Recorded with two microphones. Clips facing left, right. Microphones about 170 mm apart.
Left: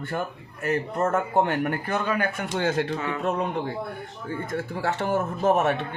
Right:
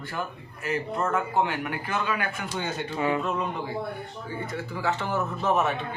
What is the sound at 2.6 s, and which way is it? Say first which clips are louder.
Speech: left 8 dB; 90° left.